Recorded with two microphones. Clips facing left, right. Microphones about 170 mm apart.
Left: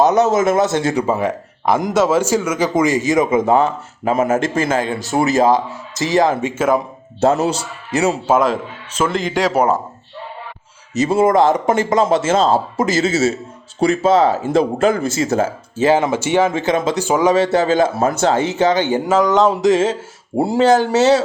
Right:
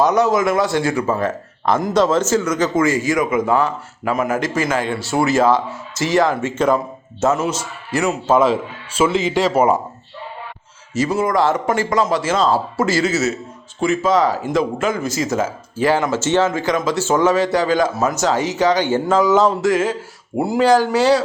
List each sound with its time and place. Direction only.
0.0 s speech: 25° left (ahead or behind)
6.5 s speech: 5° left (ahead or behind)
7.2 s a man's voice: 30° left (ahead or behind)
8.3 s speech: 10° left (ahead or behind)
9.0 s speech: 5° right (ahead or behind)
10.9 s a man's voice: 25° left (ahead or behind)
15.8 s speech: 20° left (ahead or behind)
17.3 s speech: 25° left (ahead or behind)
19.2 s speech: 5° right (ahead or behind)
19.6 s speech: 25° left (ahead or behind)